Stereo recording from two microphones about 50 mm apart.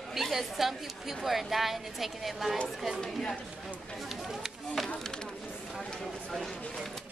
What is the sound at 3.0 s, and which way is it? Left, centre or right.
Speech, centre.